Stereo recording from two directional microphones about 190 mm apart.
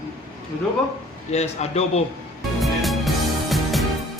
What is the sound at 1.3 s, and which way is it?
Speech, 35° left (ahead or behind).